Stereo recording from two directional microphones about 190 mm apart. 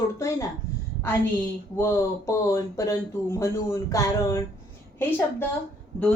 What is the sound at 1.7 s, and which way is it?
Speech, 15° left (ahead or behind).